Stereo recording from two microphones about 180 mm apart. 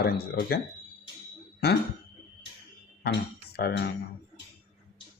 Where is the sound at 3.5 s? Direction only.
60° left (ahead or behind).